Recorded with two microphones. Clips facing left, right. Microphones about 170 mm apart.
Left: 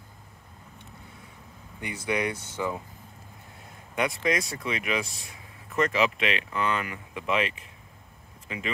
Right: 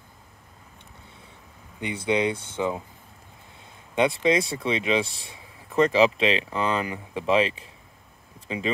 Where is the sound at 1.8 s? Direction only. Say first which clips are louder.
Right 5 dB; 25° right (ahead or behind).